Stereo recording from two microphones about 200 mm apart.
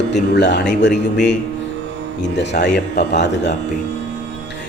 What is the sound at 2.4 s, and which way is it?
A man's voice, 55° left (ahead or behind).